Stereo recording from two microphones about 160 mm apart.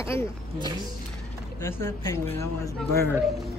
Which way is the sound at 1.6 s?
15° left (ahead or behind).